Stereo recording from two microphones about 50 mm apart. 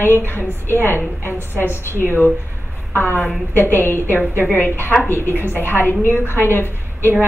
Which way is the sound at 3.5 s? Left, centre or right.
Left.